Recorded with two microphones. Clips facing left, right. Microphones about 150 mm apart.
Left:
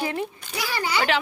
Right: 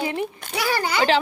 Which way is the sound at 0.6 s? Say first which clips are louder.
Right 3 dB; 50° right (ahead or behind).